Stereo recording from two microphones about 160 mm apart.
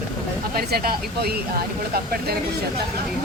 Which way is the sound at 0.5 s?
70° right (ahead or behind).